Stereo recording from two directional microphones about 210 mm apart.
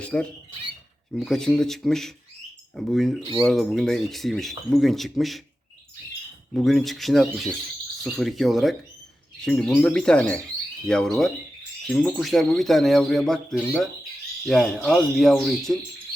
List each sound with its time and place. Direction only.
0.0 s speech: 5° left (ahead or behind)
6.5 s speech: centre (ahead or behind)